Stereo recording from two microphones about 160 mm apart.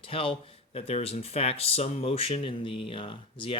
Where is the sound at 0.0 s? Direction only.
35° left (ahead or behind).